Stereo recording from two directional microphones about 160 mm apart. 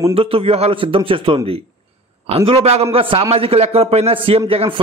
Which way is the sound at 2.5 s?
40° right (ahead or behind).